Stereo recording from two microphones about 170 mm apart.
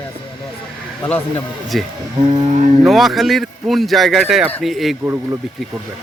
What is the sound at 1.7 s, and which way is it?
Speech, centre (ahead or behind).